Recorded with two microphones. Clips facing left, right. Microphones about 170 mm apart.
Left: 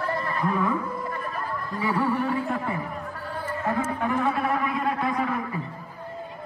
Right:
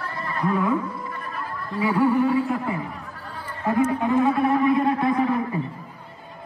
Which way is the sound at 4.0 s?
20° right (ahead or behind).